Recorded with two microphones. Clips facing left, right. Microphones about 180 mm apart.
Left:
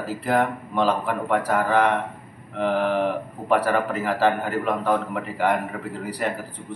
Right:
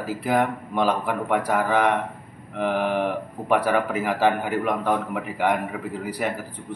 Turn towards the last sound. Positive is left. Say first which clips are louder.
# even
turn(degrees=-5)  # may be behind; listen again after turning